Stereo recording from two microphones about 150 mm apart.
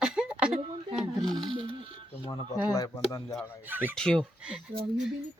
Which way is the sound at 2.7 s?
25° left (ahead or behind).